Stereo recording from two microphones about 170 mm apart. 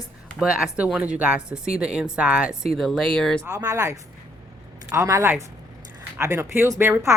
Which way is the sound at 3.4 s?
20° right (ahead or behind).